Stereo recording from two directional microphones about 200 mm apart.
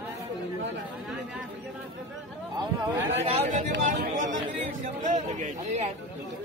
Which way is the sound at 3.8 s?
40° right (ahead or behind).